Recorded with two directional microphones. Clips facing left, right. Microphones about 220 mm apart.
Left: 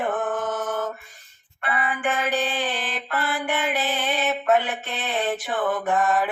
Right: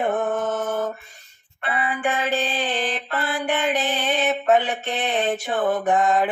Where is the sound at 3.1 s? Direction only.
30° right (ahead or behind).